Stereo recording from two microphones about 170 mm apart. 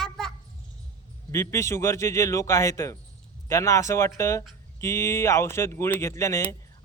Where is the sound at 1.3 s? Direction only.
15° left (ahead or behind).